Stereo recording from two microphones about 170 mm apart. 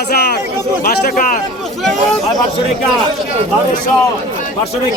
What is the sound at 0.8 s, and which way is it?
Speech, 55° left (ahead or behind).